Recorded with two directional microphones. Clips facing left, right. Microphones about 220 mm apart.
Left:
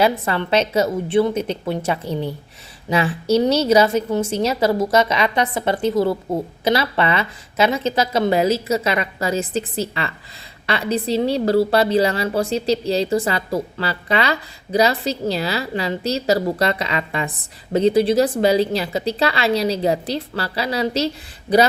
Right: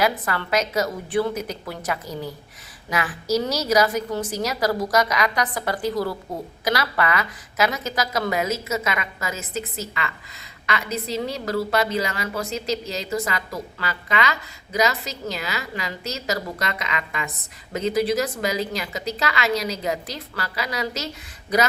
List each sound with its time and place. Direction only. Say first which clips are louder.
0.0 s a woman's voice: left 5 dB; 25° left (ahead or behind)